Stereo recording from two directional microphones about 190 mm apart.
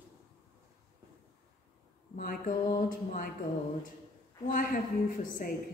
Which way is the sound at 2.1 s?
45° left (ahead or behind).